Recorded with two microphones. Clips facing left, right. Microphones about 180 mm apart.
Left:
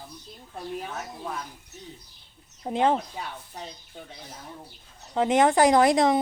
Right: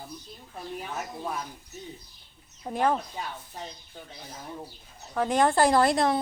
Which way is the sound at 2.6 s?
20° left (ahead or behind).